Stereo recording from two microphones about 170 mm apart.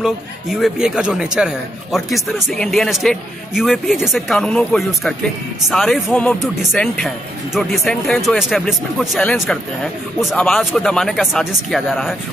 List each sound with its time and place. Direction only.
0.0 s speech: centre (ahead or behind)